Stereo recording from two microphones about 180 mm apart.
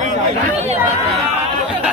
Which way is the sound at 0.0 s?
45° right (ahead or behind).